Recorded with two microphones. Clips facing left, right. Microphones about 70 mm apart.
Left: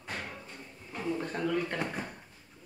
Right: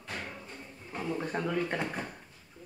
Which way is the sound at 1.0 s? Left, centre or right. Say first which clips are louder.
Even; centre.